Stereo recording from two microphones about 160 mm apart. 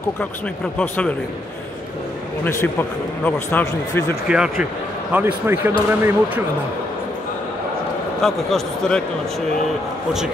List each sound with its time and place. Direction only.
0.7 s speech: 5° left (ahead or behind)
3.3 s speech: 15° left (ahead or behind)
4.3 s speech: 5° right (ahead or behind)
8.2 s speech: centre (ahead or behind)